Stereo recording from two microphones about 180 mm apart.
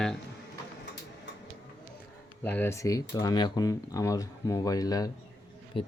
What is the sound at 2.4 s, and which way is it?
Speech, 10° left (ahead or behind).